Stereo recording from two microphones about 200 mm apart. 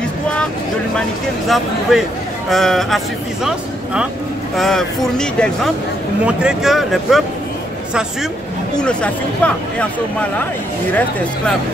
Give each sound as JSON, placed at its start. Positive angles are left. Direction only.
{"t": 1.5, "sound": "speech", "side_deg": 0}
{"t": 8.8, "sound": "speech", "side_deg": 5}
{"t": 10.9, "sound": "speech", "side_deg": 10}